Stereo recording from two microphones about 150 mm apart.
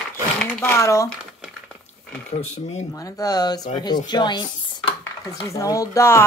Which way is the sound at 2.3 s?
45° left (ahead or behind).